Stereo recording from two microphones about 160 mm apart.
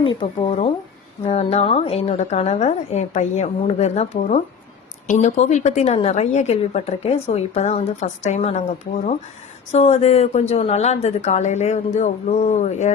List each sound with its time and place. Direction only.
0.0 s a woman's voice: 30° left (ahead or behind)
9.7 s a woman's voice: 40° left (ahead or behind)